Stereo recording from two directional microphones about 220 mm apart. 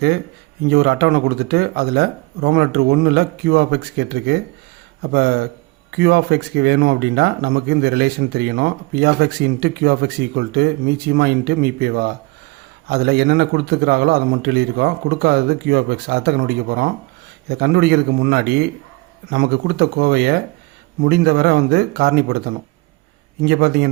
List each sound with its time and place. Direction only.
0.7 s speech: 50° right (ahead or behind)